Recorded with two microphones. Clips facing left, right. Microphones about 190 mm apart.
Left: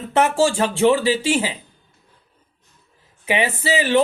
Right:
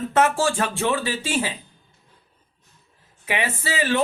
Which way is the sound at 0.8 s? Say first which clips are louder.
Left 8 dB; 20° left (ahead or behind).